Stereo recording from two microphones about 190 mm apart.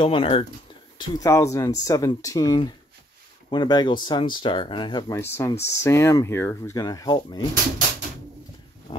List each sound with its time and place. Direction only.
0.0 s speech: 30° left (ahead or behind)
0.9 s speech: 20° left (ahead or behind)